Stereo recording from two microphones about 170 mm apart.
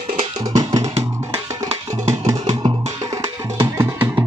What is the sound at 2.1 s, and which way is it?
Music, 20° right (ahead or behind).